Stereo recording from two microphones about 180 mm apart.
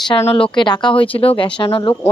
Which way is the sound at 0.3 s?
30° left (ahead or behind).